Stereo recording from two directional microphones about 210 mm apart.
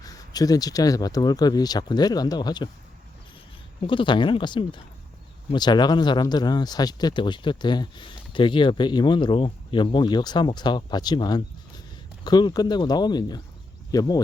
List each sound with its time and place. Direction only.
0.0 s speech: 15° left (ahead or behind)
3.8 s speech: 25° left (ahead or behind)